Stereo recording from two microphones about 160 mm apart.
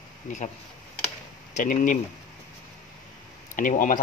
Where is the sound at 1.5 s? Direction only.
55° left (ahead or behind).